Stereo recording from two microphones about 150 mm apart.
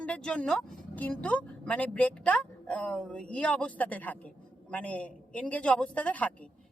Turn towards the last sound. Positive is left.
turn(degrees=10)  # may be behind; listen again after turning